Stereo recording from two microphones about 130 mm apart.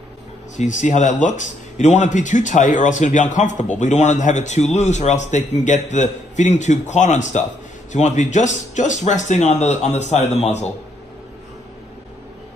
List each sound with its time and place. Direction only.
0.6 s speech: 70° left (ahead or behind)